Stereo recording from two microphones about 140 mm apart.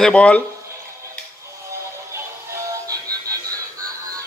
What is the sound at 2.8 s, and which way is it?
Music, 25° right (ahead or behind).